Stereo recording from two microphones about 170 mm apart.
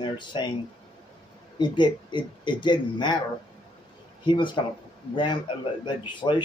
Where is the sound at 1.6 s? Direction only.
25° left (ahead or behind).